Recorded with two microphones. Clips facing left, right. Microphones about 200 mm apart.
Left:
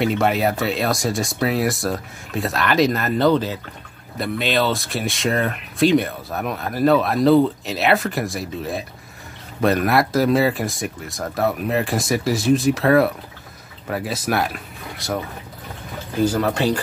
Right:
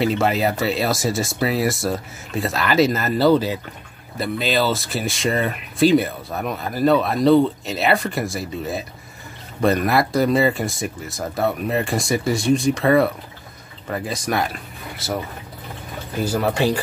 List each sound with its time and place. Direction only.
0.0 s speech: centre (ahead or behind)
16.3 s speech: 10° right (ahead or behind)